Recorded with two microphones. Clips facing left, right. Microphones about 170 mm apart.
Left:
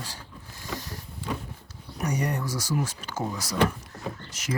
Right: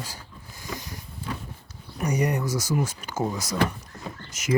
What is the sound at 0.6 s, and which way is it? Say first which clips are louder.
Vehicle: even; 10° right (ahead or behind).